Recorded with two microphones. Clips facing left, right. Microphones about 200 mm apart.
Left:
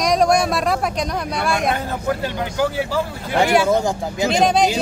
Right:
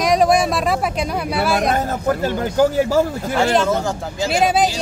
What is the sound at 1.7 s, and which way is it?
Speech, 45° right (ahead or behind).